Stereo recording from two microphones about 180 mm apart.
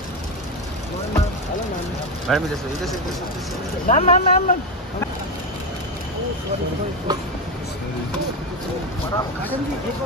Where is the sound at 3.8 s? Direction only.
40° left (ahead or behind).